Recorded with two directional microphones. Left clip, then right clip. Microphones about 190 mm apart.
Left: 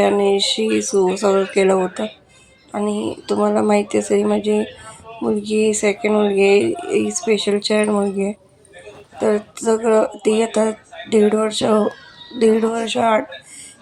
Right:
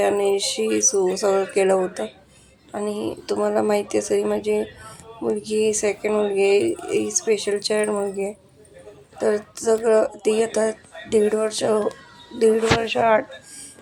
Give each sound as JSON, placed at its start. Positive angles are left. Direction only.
{"t": 0.0, "sound": "speech", "side_deg": 15}